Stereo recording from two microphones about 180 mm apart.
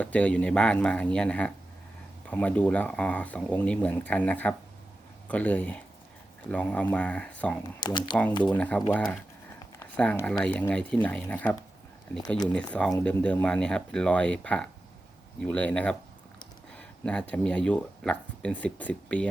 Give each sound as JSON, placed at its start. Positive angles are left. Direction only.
{"t": 0.0, "sound": "speech", "side_deg": 5}
{"t": 7.9, "sound": "speech", "side_deg": 25}
{"t": 8.4, "sound": "speech", "side_deg": 10}
{"t": 12.5, "sound": "speech", "side_deg": 5}